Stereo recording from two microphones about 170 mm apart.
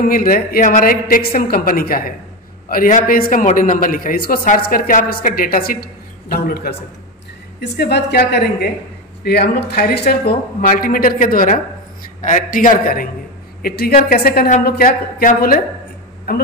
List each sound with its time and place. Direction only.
0.0 s a man's voice: 55° left (ahead or behind)
7.6 s a man's voice: 75° left (ahead or behind)